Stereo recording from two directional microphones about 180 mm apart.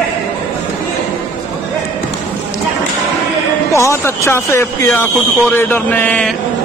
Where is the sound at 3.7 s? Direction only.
15° left (ahead or behind).